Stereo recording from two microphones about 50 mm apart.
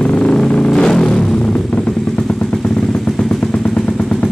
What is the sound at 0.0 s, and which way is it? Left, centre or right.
Vehicle, left.